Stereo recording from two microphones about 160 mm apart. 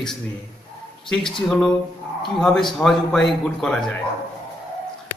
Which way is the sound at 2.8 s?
Centre (ahead or behind).